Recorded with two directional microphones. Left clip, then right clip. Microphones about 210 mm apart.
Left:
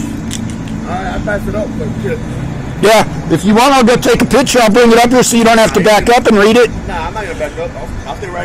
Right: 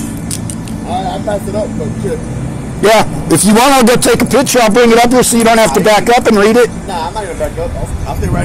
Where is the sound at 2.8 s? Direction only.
Centre (ahead or behind).